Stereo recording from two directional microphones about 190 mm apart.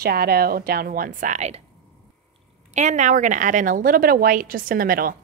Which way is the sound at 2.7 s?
40° right (ahead or behind).